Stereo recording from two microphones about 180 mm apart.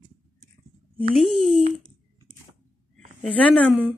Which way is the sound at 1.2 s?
Centre (ahead or behind).